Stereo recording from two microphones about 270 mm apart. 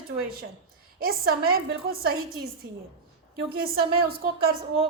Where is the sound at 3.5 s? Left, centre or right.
Right.